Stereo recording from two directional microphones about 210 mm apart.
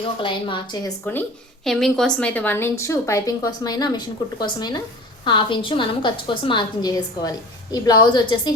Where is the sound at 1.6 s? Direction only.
Centre (ahead or behind).